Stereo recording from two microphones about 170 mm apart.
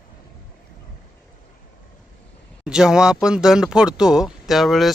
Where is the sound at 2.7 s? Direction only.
5° right (ahead or behind).